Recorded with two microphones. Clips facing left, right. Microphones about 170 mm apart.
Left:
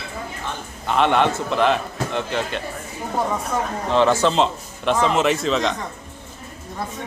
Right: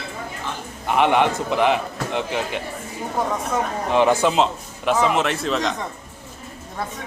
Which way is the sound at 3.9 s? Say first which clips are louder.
Even; 15° right (ahead or behind).